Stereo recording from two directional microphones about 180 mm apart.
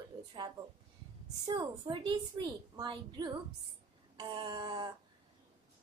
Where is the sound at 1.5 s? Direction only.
30° right (ahead or behind).